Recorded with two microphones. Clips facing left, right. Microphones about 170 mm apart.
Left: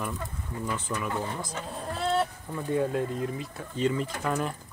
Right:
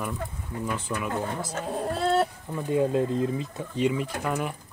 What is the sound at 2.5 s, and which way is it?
Speech, 20° right (ahead or behind).